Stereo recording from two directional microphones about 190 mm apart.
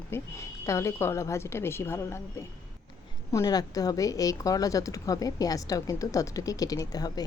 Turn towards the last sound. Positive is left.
turn(degrees=20)  # may be behind; listen again after turning